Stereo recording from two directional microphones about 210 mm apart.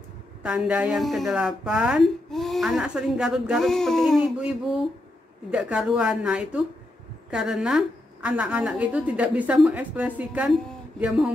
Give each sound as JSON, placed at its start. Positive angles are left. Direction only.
{"t": 0.4, "sound": "a woman's voice", "side_deg": -5}
{"t": 5.5, "sound": "a woman's voice", "side_deg": -5}